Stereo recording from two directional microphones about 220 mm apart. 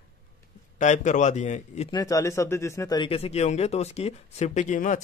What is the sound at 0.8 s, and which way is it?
Speech, 35° left (ahead or behind).